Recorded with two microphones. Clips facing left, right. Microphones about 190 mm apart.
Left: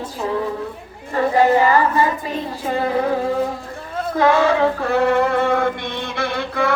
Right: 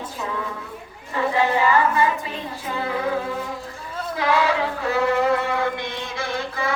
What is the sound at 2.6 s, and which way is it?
Music, 40° left (ahead or behind).